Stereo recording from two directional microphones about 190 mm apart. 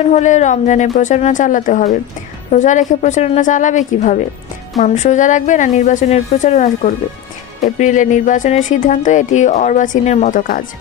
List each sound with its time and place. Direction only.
0.0 s speech: 40° left (ahead or behind)